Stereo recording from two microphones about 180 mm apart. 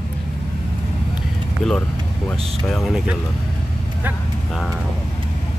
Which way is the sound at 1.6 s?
Centre (ahead or behind).